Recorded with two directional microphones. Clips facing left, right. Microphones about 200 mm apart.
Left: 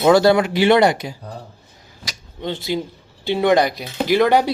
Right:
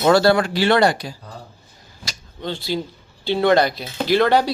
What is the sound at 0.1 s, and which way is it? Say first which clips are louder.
Speech: left 2 dB; 15° left (ahead or behind).